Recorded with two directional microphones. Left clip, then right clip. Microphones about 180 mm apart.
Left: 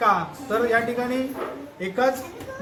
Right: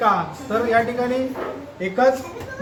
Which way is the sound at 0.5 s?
50° left (ahead or behind).